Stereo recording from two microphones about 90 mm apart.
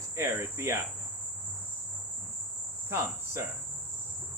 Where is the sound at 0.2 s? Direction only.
30° right (ahead or behind).